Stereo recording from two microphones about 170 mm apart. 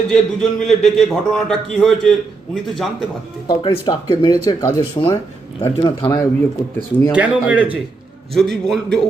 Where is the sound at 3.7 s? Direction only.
25° left (ahead or behind).